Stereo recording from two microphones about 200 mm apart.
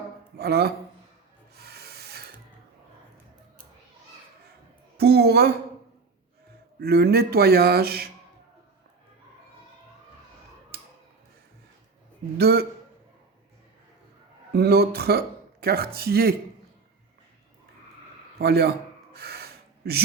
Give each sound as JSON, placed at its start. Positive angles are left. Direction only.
{"t": 0.3, "sound": "a man's voice", "side_deg": -50}
{"t": 1.5, "sound": "rub", "side_deg": -55}
{"t": 4.9, "sound": "speech", "side_deg": -55}
{"t": 6.7, "sound": "speech", "side_deg": -55}
{"t": 10.7, "sound": "a sound", "side_deg": -50}
{"t": 12.4, "sound": "speech", "side_deg": -50}
{"t": 14.5, "sound": "speech", "side_deg": -50}
{"t": 18.3, "sound": "speech", "side_deg": -50}
{"t": 19.1, "sound": "a sound", "side_deg": -55}